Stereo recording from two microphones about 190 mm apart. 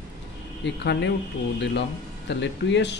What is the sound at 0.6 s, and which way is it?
Speech, 70° left (ahead or behind).